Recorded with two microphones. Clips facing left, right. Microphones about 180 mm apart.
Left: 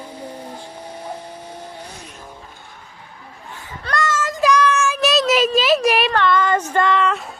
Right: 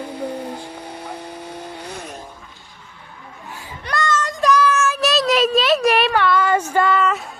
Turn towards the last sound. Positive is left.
turn(degrees=-5)  # may be behind; listen again after turning